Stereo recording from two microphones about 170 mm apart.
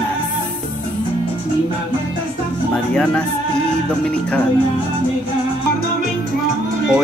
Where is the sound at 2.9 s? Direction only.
5° left (ahead or behind).